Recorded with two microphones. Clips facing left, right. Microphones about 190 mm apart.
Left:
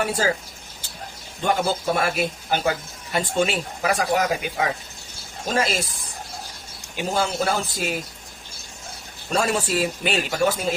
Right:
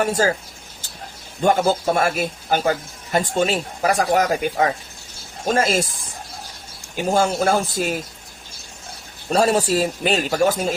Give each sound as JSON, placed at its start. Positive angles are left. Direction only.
{"t": 0.0, "sound": "speech", "side_deg": -45}
{"t": 1.4, "sound": "speech", "side_deg": -45}
{"t": 6.9, "sound": "speech", "side_deg": -45}
{"t": 9.3, "sound": "speech", "side_deg": -40}